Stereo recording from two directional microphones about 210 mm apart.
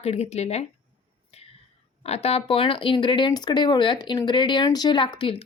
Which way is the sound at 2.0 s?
30° left (ahead or behind).